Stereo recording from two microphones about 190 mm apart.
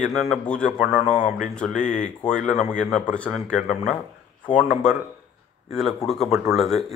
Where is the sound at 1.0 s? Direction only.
45° left (ahead or behind).